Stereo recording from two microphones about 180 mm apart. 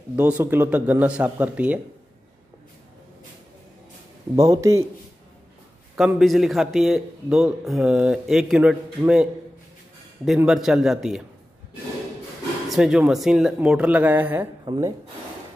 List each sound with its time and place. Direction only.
0.1 s speech: 10° right (ahead or behind)
4.4 s speech: 20° right (ahead or behind)
5.9 s a man's voice: centre (ahead or behind)
12.7 s speech: 5° right (ahead or behind)
14.6 s speech: 25° right (ahead or behind)